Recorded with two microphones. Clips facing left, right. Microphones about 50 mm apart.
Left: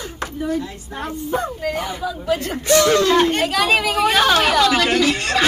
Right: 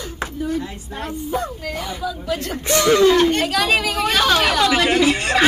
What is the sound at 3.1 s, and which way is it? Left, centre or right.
Speech, centre.